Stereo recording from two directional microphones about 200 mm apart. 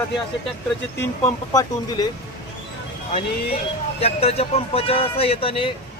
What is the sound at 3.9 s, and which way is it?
Speech, 30° left (ahead or behind).